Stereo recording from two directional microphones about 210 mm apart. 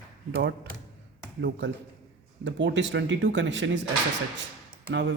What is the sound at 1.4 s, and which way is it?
Speech, 60° right (ahead or behind).